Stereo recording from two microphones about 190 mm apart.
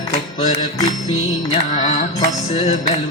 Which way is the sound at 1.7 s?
40° left (ahead or behind).